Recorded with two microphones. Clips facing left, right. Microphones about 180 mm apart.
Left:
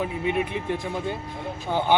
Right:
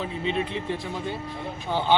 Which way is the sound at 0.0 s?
10° left (ahead or behind).